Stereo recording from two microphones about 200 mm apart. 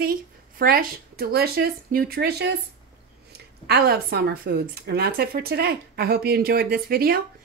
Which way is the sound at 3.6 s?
55° right (ahead or behind).